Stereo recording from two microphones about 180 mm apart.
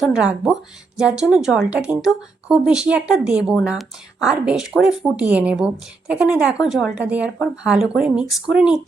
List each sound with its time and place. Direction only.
0.0 s a woman's voice: 5° right (ahead or behind)